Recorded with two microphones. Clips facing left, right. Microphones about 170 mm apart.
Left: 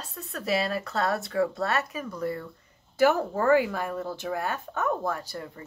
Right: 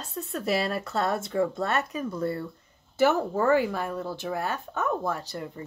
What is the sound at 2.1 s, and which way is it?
Speech, 30° right (ahead or behind).